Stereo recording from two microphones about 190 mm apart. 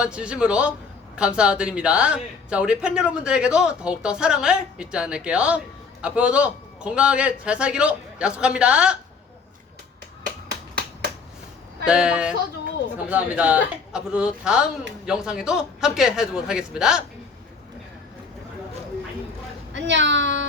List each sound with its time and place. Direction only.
0.0 s a man's voice: 5° right (ahead or behind)
11.9 s a man's voice: 5° right (ahead or behind)
19.7 s speech: 70° right (ahead or behind)